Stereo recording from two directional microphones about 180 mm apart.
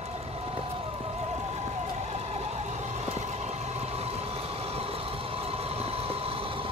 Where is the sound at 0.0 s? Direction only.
35° right (ahead or behind).